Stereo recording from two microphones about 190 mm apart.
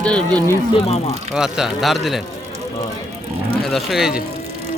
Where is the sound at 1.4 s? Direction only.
5° right (ahead or behind).